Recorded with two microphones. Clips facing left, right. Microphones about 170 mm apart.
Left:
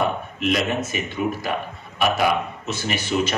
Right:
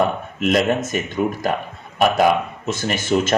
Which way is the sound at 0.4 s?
50° right (ahead or behind).